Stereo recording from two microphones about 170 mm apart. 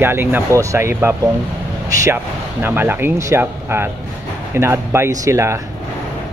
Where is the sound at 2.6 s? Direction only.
10° right (ahead or behind).